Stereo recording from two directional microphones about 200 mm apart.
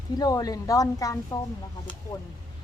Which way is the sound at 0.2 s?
20° left (ahead or behind).